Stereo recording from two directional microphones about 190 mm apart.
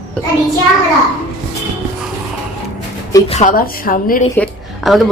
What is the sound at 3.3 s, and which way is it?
Speech, 40° left (ahead or behind).